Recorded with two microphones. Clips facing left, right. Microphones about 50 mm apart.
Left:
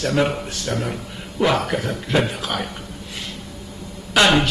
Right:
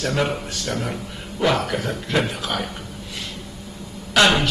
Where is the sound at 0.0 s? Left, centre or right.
Centre.